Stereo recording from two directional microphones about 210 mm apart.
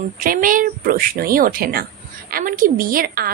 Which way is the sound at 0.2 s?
40° right (ahead or behind).